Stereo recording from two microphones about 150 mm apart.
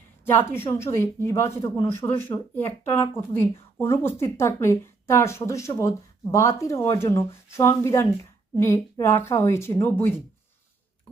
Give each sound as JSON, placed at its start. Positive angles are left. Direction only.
{"t": 0.3, "sound": "a woman's voice", "side_deg": 15}